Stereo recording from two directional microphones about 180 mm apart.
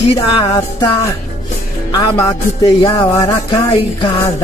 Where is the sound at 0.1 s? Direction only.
25° left (ahead or behind).